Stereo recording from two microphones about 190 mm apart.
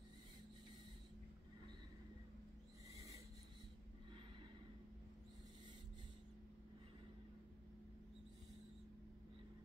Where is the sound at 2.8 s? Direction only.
15° right (ahead or behind).